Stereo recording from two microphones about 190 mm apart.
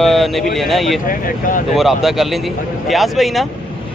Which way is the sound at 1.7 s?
Centre (ahead or behind).